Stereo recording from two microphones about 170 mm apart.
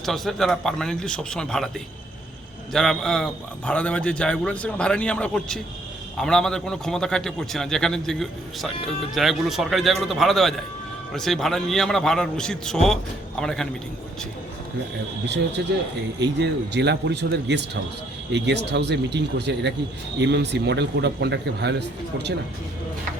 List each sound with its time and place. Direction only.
0.0 s a man's voice: centre (ahead or behind)
2.7 s a man's voice: centre (ahead or behind)
15.6 s a man's voice: 80° right